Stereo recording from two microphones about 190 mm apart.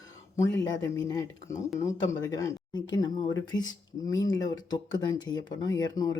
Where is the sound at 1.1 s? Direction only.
15° left (ahead or behind).